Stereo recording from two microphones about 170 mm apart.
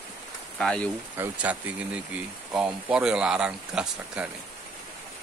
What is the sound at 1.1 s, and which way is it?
Speech, 10° right (ahead or behind).